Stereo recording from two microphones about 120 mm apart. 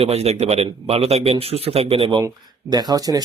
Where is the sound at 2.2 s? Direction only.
35° right (ahead or behind).